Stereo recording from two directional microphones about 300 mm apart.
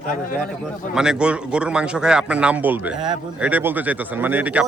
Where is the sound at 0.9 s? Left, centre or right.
Centre.